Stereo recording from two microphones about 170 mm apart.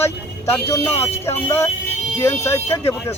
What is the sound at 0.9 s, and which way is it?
Speech, 35° left (ahead or behind).